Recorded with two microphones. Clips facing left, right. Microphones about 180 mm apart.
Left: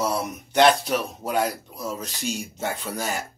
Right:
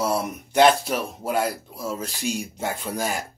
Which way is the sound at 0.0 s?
10° right (ahead or behind).